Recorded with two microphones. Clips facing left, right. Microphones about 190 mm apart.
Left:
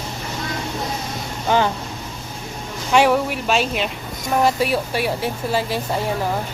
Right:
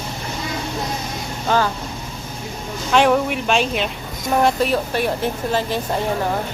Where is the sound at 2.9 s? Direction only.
5° left (ahead or behind).